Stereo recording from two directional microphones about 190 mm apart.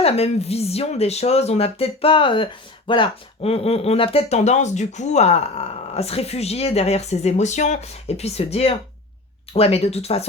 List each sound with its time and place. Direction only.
0.0 s speech: 35° left (ahead or behind)